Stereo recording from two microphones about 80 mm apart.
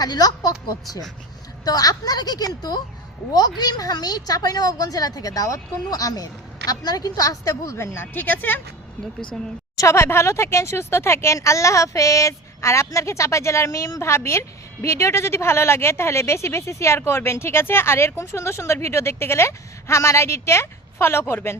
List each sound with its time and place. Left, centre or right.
0.0 s a woman's voice: left
7.8 s speech: left
9.7 s speech: left